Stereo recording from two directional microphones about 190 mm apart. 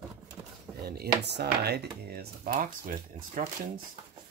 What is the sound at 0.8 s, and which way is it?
Speech, 55° right (ahead or behind).